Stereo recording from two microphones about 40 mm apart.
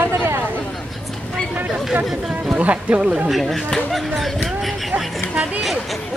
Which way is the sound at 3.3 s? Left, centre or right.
Centre.